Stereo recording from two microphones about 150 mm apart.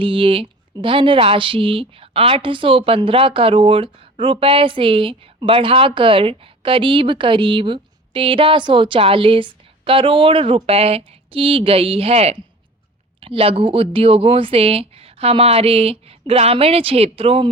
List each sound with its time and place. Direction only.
0.0 s speech: 35° right (ahead or behind)